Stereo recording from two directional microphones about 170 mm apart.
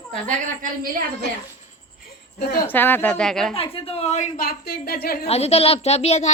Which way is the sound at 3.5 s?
35° left (ahead or behind).